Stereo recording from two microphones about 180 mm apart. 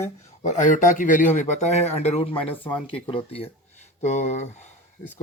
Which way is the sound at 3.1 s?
30° left (ahead or behind).